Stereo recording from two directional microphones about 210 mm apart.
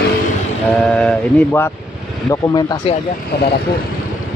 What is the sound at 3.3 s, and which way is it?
Speech, 50° left (ahead or behind).